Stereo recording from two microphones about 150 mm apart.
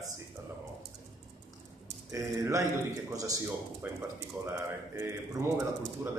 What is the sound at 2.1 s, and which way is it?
A man's voice, 20° right (ahead or behind).